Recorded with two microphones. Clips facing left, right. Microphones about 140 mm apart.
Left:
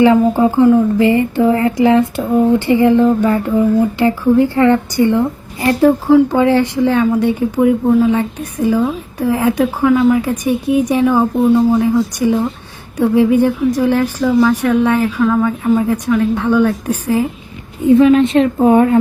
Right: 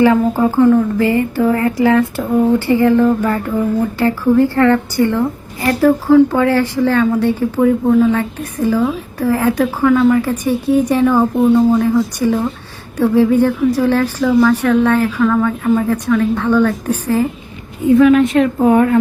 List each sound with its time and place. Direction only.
0.0 s speech: 20° left (ahead or behind)
17.8 s speech: 25° left (ahead or behind)